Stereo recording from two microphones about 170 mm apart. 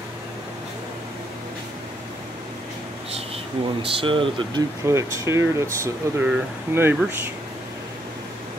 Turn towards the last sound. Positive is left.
turn(degrees=-15)  # may be behind; listen again after turning